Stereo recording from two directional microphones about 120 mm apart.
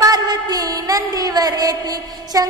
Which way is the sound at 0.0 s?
30° right (ahead or behind).